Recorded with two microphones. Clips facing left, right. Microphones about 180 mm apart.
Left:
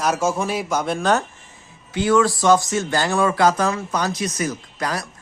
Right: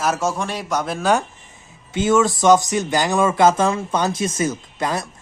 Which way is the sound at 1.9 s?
20° right (ahead or behind).